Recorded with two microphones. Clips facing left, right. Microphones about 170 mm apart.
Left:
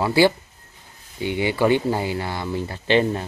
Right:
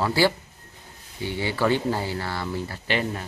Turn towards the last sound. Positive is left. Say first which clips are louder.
# left 7 dB
turn(degrees=30)  # may be behind; listen again after turning